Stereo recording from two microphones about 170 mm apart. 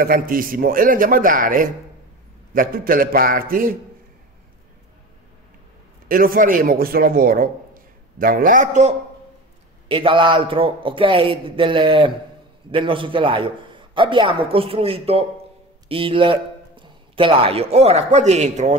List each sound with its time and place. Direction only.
0.0 s a man's voice: 55° right (ahead or behind)
6.0 s a man's voice: 55° right (ahead or behind)
9.8 s a man's voice: 30° right (ahead or behind)